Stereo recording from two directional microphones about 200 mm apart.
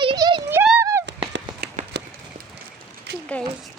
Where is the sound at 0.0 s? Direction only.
25° right (ahead or behind).